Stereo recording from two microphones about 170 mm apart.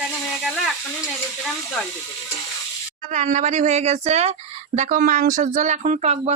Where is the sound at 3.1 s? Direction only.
45° right (ahead or behind).